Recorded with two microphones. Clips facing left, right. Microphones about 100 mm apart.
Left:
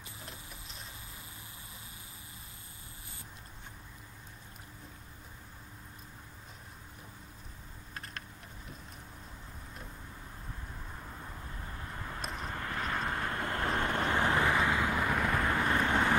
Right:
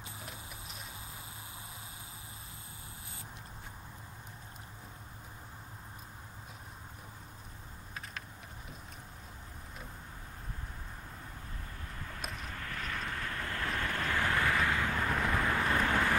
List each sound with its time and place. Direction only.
0.2 s clip-clop: 5° right (ahead or behind)
11.9 s vehicle: 30° left (ahead or behind); by 15.2 s 10° left (ahead or behind)
15.2 s vehicle: centre (ahead or behind)
15.6 s vehicle: 30° left (ahead or behind)